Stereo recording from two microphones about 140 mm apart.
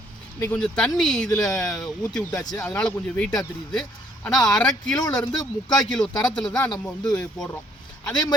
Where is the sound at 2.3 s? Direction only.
30° left (ahead or behind).